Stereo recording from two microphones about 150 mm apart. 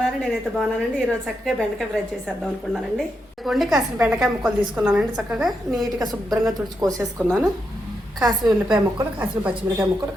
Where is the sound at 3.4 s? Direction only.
Centre (ahead or behind).